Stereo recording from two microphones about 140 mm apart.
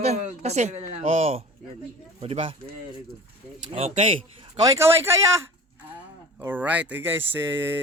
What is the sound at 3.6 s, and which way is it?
Speech, 40° right (ahead or behind).